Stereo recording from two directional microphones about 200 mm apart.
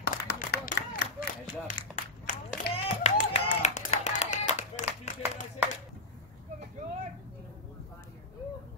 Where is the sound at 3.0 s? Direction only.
35° left (ahead or behind).